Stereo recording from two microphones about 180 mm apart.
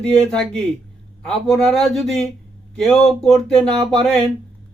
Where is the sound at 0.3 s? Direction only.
5° left (ahead or behind).